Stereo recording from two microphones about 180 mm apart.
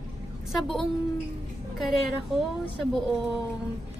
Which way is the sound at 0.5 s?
Centre (ahead or behind).